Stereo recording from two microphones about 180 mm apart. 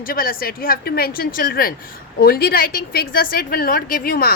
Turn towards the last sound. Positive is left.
turn(degrees=55)  # may be behind; listen again after turning